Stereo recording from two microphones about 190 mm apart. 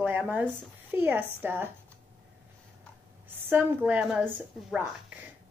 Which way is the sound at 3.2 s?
10° right (ahead or behind).